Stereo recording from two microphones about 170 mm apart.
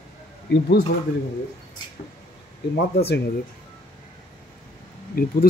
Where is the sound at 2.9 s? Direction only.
75° left (ahead or behind).